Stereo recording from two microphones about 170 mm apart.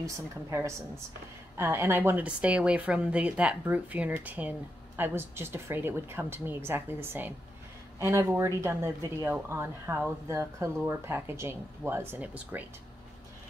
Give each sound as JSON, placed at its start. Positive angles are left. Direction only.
{"t": 0.0, "sound": "speech", "side_deg": -15}